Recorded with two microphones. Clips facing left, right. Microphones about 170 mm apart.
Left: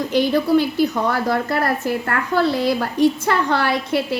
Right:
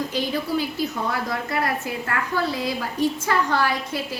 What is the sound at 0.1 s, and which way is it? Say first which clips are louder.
A woman's voice: left 8 dB; 70° left (ahead or behind).